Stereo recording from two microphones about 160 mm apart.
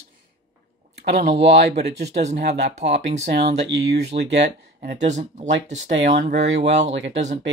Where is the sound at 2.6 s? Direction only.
45° right (ahead or behind).